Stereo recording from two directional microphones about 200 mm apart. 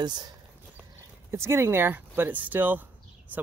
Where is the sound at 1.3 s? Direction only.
15° right (ahead or behind).